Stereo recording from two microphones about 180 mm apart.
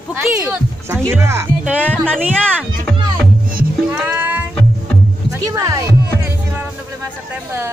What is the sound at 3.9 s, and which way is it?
Music, 10° right (ahead or behind).